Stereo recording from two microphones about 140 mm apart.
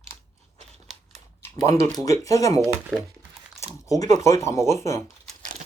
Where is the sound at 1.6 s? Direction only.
25° left (ahead or behind).